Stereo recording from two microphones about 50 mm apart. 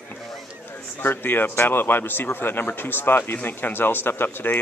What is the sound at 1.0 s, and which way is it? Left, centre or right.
Speech, left.